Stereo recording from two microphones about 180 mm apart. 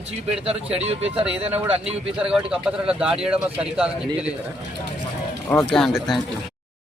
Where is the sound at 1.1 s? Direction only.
5° right (ahead or behind).